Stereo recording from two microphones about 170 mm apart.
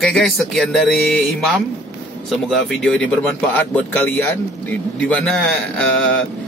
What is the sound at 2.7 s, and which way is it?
Speech, 5° left (ahead or behind).